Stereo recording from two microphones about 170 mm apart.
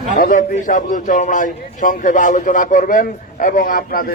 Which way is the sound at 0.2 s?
50° left (ahead or behind).